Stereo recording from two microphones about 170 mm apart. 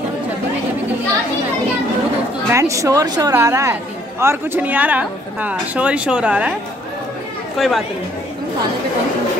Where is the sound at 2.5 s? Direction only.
15° right (ahead or behind).